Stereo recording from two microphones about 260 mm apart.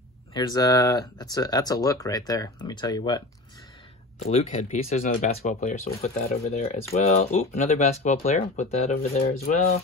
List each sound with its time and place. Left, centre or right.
0.3 s speech: centre